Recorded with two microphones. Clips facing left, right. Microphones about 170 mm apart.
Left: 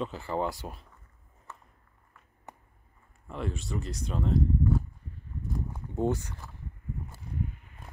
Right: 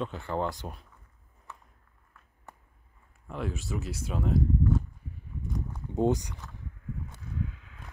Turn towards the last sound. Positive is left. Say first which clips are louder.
# even
turn(degrees=-90)